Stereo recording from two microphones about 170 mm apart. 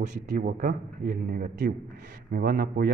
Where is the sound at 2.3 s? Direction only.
65° right (ahead or behind).